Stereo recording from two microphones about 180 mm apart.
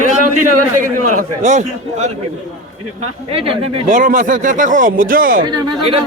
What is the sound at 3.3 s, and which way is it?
Speech, 30° right (ahead or behind).